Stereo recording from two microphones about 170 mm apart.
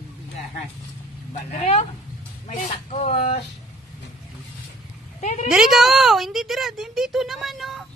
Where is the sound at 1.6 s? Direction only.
40° left (ahead or behind).